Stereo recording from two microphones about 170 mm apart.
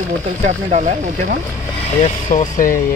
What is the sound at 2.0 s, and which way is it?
Speech, 45° left (ahead or behind).